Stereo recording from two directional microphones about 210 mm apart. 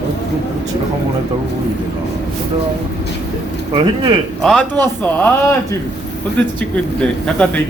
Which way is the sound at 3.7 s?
25° right (ahead or behind).